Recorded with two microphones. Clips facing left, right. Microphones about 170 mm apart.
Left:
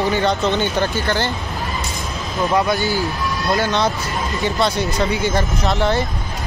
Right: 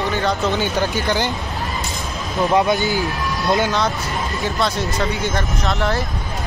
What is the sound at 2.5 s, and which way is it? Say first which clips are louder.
Speech: right 1 dB; 20° right (ahead or behind).